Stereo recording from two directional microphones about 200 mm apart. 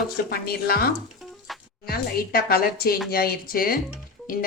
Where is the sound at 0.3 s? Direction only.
50° left (ahead or behind).